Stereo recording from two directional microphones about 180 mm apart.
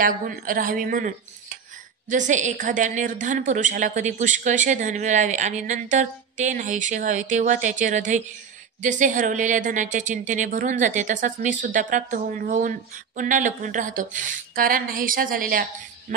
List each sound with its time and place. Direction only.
0.0 s speech: 50° right (ahead or behind)